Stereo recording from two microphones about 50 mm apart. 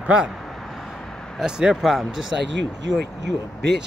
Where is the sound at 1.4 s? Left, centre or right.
Centre.